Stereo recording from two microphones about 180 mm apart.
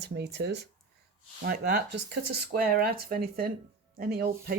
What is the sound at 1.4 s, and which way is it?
Speech, 60° right (ahead or behind).